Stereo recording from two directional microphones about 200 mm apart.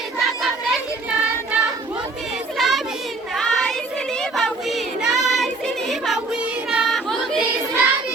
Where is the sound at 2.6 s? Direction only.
Centre (ahead or behind).